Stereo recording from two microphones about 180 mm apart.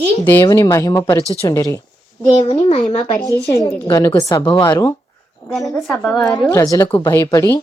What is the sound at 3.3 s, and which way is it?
A woman's voice, 20° left (ahead or behind).